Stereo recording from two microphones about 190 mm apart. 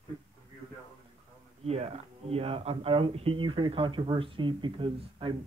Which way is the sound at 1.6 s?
35° right (ahead or behind).